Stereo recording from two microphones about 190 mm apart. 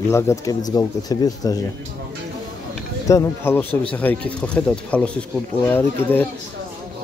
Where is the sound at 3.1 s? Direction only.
15° left (ahead or behind).